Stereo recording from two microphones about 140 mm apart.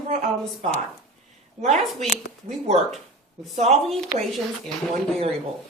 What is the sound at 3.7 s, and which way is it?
Speech, centre (ahead or behind).